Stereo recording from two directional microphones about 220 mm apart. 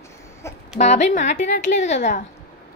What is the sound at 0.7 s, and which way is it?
A woman's voice, 30° left (ahead or behind).